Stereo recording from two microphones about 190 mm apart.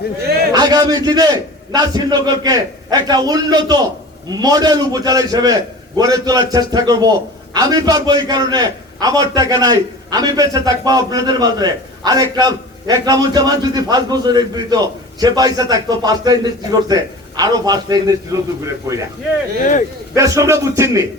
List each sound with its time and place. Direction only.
0.5 s a man's voice: 20° right (ahead or behind)
19.5 s speech: 45° left (ahead or behind)
20.1 s speech: 15° right (ahead or behind)